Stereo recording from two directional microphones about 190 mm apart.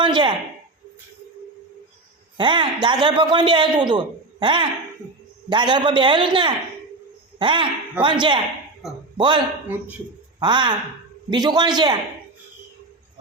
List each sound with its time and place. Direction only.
0.0 s a sound: 25° right (ahead or behind)
2.4 s a man's voice: 25° right (ahead or behind)
9.7 s speech: 10° right (ahead or behind)
10.4 s a man's voice: 25° right (ahead or behind)